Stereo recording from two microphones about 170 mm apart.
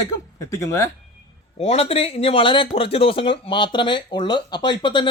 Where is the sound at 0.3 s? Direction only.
15° left (ahead or behind).